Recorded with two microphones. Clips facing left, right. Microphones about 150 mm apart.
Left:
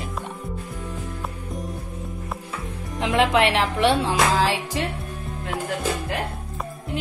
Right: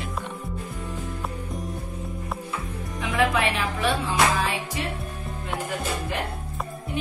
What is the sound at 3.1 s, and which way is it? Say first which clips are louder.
Music: left 4 dB; 85° left.